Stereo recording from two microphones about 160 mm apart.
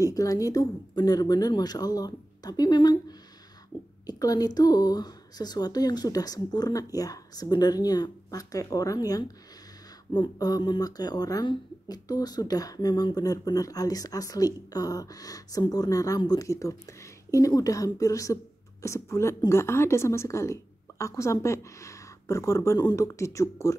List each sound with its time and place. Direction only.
0.0 s speech: 20° left (ahead or behind)